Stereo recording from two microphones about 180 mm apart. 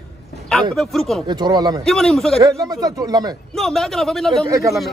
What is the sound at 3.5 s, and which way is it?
Speech, centre (ahead or behind).